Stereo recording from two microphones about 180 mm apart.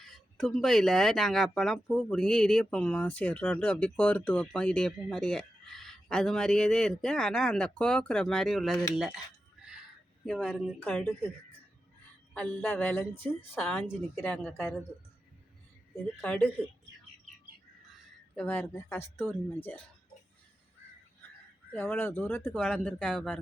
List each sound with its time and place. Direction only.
0.0 s speech: centre (ahead or behind)
10.2 s a woman's voice: 5° left (ahead or behind)
12.3 s a woman's voice: 5° left (ahead or behind)
16.0 s a woman's voice: 10° left (ahead or behind)
18.3 s a woman's voice: 10° left (ahead or behind)
21.7 s a woman's voice: 10° left (ahead or behind)